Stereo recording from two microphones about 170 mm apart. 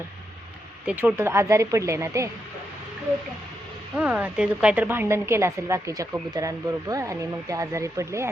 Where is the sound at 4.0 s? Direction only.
10° right (ahead or behind).